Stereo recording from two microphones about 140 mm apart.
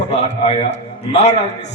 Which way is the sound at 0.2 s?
50° left (ahead or behind).